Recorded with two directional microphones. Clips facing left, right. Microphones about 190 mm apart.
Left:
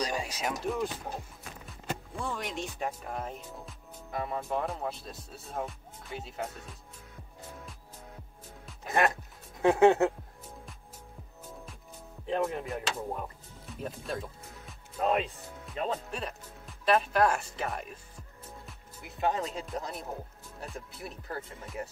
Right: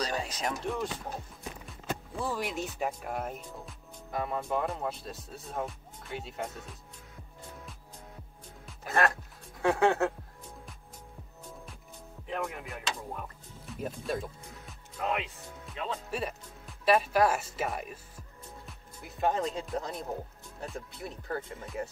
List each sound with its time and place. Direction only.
0.0 s speech: 10° left (ahead or behind)
8.8 s speech: 15° left (ahead or behind)
12.3 s speech: 30° left (ahead or behind)
12.7 s music: 30° left (ahead or behind)
13.7 s speech: 5° right (ahead or behind)
15.0 s music: 35° left (ahead or behind)
15.7 s speech: 40° left (ahead or behind)
16.1 s speech: 5° right (ahead or behind)